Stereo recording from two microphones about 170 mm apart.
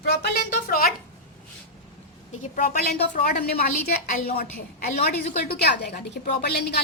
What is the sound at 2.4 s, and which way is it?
Speech, 55° left (ahead or behind).